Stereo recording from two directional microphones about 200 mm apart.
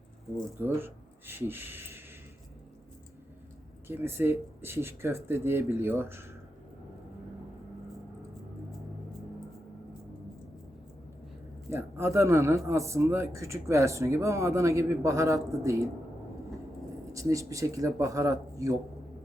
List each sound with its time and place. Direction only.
0.6 s speech: 10° right (ahead or behind)
3.8 s speech: 10° right (ahead or behind)
11.7 s speech: 15° right (ahead or behind)
17.1 s speech: 15° right (ahead or behind)